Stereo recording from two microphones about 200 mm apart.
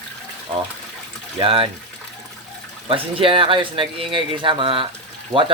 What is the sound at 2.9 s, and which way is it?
Speech, 25° right (ahead or behind).